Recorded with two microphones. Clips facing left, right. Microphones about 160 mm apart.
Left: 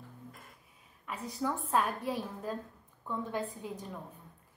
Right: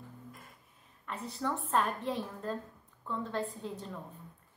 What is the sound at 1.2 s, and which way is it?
Speech, 5° left (ahead or behind).